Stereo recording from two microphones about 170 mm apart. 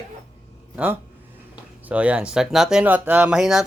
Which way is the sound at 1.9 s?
10° right (ahead or behind).